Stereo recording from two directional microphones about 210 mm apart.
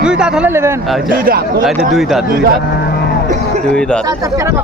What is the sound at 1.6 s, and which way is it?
Speech, centre (ahead or behind).